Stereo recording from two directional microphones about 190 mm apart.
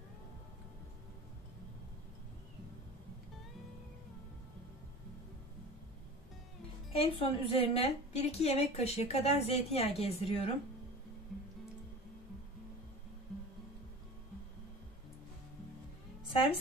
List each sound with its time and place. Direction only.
6.9 s a woman's voice: 30° left (ahead or behind)